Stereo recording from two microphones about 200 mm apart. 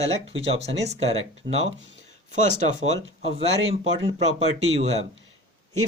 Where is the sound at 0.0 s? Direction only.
30° right (ahead or behind).